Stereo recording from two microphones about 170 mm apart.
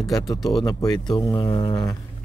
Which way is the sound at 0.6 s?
25° left (ahead or behind).